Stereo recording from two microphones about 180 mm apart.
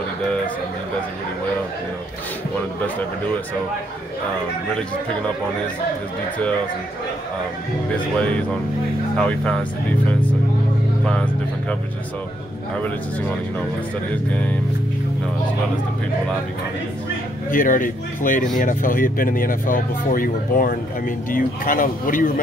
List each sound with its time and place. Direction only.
7.9 s speech: 5° left (ahead or behind)
17.5 s speech: 50° left (ahead or behind)